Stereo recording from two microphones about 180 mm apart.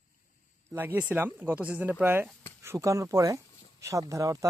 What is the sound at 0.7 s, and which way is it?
Speech, 10° right (ahead or behind).